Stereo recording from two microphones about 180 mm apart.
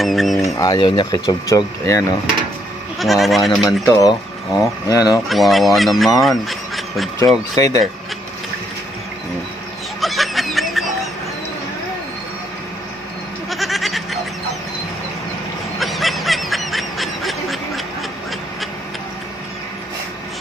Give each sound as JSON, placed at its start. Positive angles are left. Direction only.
{"t": 0.0, "sound": "speech", "side_deg": 0}
{"t": 0.6, "sound": "speech", "side_deg": 25}
{"t": 3.0, "sound": "speech", "side_deg": 0}
{"t": 3.8, "sound": "speech", "side_deg": 20}
{"t": 5.3, "sound": "speech", "side_deg": 0}
{"t": 6.2, "sound": "a sound", "side_deg": 0}
{"t": 7.5, "sound": "speech", "side_deg": 20}
{"t": 9.9, "sound": "music", "side_deg": 0}
{"t": 13.5, "sound": "a sound", "side_deg": 0}
{"t": 15.8, "sound": "snicker", "side_deg": 0}